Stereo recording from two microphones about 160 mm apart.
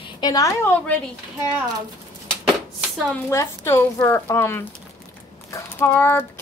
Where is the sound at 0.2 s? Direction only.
20° left (ahead or behind).